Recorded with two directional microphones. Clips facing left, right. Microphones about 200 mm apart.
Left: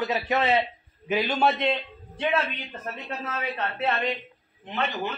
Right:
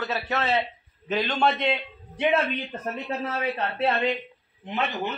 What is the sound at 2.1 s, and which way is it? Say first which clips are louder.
Speech: right 3 dB; 15° right (ahead or behind).